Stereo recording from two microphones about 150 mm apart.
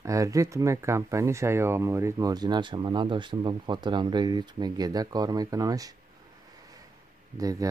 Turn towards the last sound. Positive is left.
turn(degrees=-25)  # may be behind; listen again after turning